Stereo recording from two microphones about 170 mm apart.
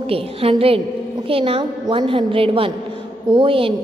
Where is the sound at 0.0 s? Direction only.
35° right (ahead or behind).